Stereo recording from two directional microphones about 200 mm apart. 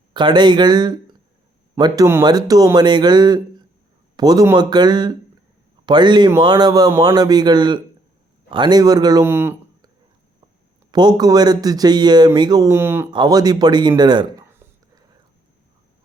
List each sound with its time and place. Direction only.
0.1 s a man's voice: 20° right (ahead or behind)
10.9 s speech: 20° right (ahead or behind)
14.5 s whispering: 10° right (ahead or behind)